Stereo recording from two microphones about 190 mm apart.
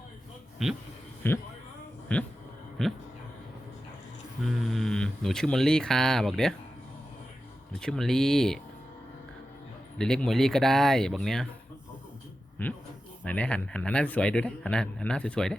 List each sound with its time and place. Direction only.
0.6 s speech: centre (ahead or behind)
1.2 s speech: 10° left (ahead or behind)
4.4 s speech: centre (ahead or behind)
7.8 s speech: 5° left (ahead or behind)
10.0 s speech: 5° left (ahead or behind)
12.6 s speech: 10° left (ahead or behind)